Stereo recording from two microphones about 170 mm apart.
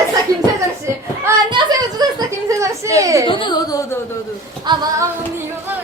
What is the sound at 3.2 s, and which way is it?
Speech, 30° left (ahead or behind).